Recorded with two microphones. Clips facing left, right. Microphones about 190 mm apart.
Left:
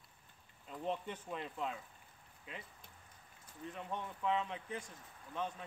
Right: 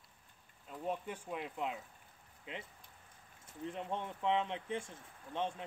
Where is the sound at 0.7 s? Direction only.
10° right (ahead or behind); by 2.6 s 25° right (ahead or behind).